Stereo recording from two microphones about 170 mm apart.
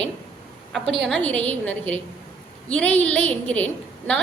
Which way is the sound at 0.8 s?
90° right.